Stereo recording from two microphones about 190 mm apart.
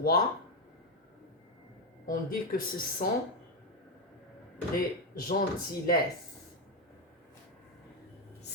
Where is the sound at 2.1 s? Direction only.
50° left (ahead or behind).